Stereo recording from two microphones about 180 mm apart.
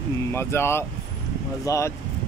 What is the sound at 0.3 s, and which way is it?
Speech, 15° left (ahead or behind).